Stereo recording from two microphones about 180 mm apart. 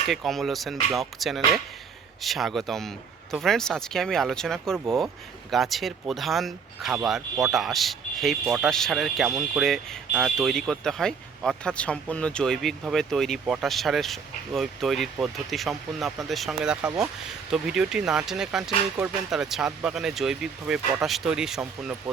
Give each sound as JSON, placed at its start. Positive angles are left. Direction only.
{"t": 0.1, "sound": "speech", "side_deg": 0}